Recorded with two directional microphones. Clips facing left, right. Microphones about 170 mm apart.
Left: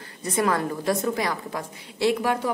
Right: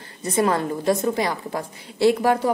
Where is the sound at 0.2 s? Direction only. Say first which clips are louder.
Right 3 dB; 25° right (ahead or behind).